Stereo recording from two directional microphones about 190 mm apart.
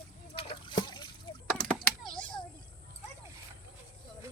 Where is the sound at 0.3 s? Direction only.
30° left (ahead or behind).